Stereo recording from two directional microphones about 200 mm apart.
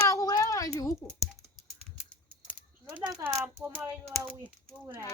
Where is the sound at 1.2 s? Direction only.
5° left (ahead or behind).